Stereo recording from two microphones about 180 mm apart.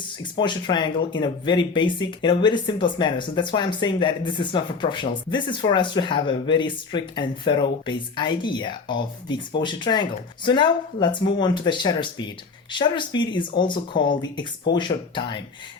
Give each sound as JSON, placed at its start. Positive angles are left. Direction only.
{"t": 0.2, "sound": "speech", "side_deg": 25}